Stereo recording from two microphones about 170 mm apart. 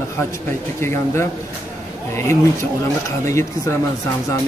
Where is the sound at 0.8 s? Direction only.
15° left (ahead or behind).